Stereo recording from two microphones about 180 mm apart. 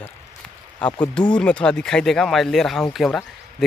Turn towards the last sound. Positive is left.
turn(degrees=0)  # may be behind; listen again after turning